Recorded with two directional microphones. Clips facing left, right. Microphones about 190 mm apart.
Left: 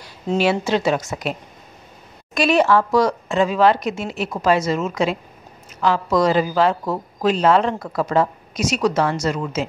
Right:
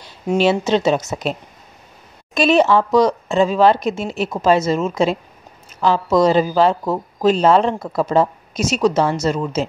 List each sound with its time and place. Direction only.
0.4 s a woman's voice: 25° right (ahead or behind)
2.3 s a woman's voice: 25° right (ahead or behind)